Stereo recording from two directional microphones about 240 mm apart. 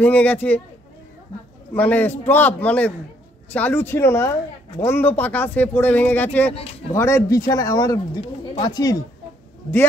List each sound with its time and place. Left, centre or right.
0.0 s speech: centre
1.7 s speech: centre
6.5 s speech: left
7.0 s speech: centre